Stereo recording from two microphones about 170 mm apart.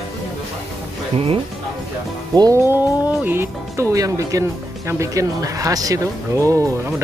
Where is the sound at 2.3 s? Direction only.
20° right (ahead or behind).